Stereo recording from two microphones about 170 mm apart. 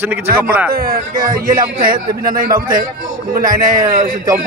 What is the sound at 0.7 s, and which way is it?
Speech, 60° right (ahead or behind).